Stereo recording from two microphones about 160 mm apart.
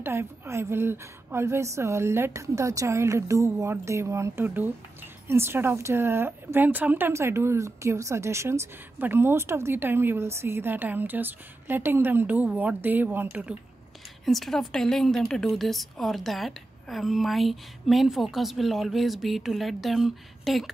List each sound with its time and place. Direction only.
0.0 s a woman's voice: 15° right (ahead or behind)
14.2 s a woman's voice: centre (ahead or behind)